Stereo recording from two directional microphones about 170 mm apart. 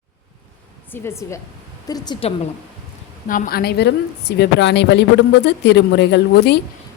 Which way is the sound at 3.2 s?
55° left (ahead or behind).